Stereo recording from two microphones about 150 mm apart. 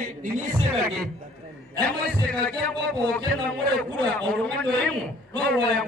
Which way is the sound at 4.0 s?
5° left (ahead or behind).